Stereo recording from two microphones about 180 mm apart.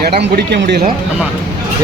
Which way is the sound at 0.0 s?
60° right (ahead or behind).